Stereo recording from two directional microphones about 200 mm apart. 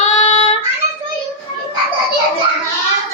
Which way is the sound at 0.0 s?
35° left (ahead or behind).